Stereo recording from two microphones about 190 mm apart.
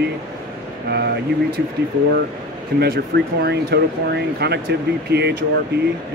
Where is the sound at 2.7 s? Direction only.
50° right (ahead or behind).